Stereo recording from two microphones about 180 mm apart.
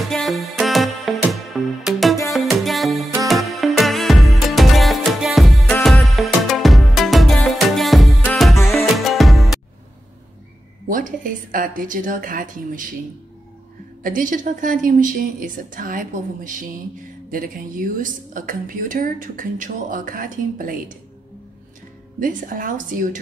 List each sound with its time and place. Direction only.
0.0 s music: centre (ahead or behind)
10.9 s a woman's voice: 50° right (ahead or behind)
14.0 s a woman's voice: 50° right (ahead or behind)
22.2 s a woman's voice: 50° right (ahead or behind)